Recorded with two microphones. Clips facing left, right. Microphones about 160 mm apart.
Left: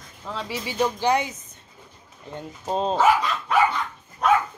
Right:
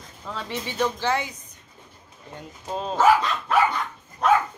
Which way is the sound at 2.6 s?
30° left (ahead or behind).